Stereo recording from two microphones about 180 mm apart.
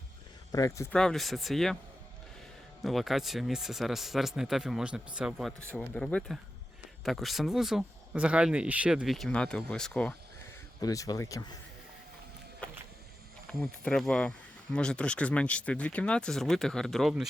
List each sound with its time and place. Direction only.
0.5 s speech: 20° left (ahead or behind)
0.9 s speech: 5° left (ahead or behind)
2.8 s speech: centre (ahead or behind)
10.8 s speech: 20° left (ahead or behind)
12.6 s a sound: 5° left (ahead or behind)
13.5 s speech: centre (ahead or behind)